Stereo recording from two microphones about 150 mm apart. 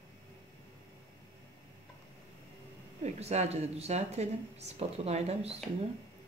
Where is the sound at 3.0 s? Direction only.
45° right (ahead or behind).